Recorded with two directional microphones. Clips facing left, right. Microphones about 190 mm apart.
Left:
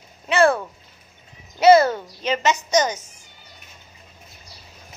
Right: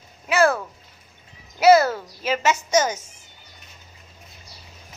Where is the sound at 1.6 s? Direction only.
5° right (ahead or behind).